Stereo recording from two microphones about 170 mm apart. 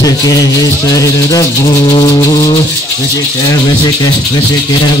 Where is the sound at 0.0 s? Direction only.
20° left (ahead or behind).